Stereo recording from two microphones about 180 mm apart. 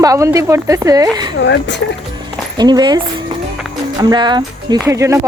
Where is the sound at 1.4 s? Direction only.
75° left (ahead or behind).